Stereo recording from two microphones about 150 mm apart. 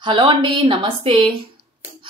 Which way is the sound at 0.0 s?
35° right (ahead or behind).